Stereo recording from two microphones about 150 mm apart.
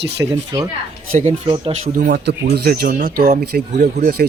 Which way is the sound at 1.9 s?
80° right.